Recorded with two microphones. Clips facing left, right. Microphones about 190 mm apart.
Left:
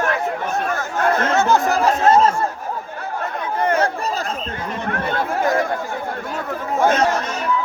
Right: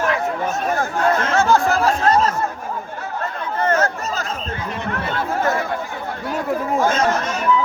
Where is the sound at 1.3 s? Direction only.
20° left (ahead or behind).